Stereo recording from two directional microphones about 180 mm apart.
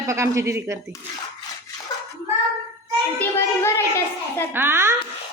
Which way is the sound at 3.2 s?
15° left (ahead or behind).